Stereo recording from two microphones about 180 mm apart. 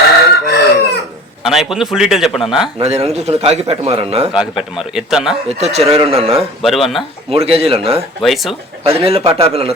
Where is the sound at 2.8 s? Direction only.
35° right (ahead or behind).